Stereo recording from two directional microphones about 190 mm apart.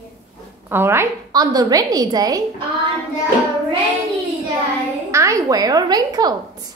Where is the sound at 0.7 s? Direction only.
15° right (ahead or behind).